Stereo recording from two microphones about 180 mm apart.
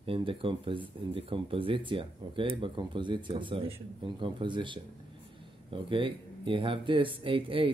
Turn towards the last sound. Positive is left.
turn(degrees=-30)  # may be behind; listen again after turning